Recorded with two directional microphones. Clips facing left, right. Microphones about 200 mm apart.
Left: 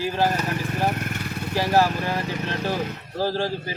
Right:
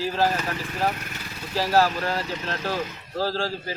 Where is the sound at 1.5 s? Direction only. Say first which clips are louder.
Left 1 dB; 15° left (ahead or behind).